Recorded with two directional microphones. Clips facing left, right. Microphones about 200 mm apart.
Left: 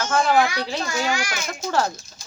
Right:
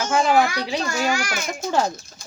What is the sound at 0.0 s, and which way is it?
Speech, 10° right (ahead or behind).